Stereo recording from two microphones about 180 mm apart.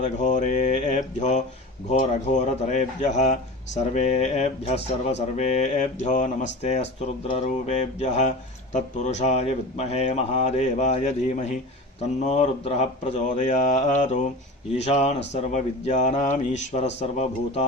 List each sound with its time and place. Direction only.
0.0 s speech: 40° left (ahead or behind)